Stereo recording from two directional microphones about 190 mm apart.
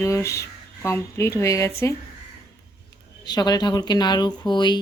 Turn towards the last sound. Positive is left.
turn(degrees=25)  # may be behind; listen again after turning